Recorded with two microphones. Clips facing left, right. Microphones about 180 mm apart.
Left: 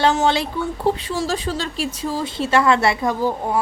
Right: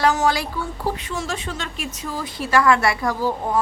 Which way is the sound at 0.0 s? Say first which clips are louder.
Left 2 dB; 25° left (ahead or behind).